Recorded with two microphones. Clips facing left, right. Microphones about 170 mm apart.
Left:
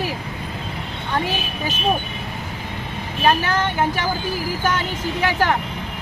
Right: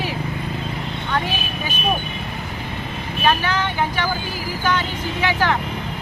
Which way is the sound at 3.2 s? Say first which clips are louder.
Left 1 dB; 45° left (ahead or behind).